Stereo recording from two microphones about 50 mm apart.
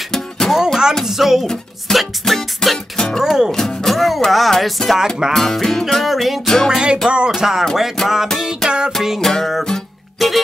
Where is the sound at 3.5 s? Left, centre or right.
Centre.